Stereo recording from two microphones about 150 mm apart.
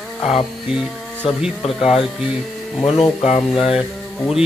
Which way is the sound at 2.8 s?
45° left (ahead or behind).